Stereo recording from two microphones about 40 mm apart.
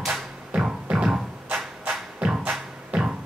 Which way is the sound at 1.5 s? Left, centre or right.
Right.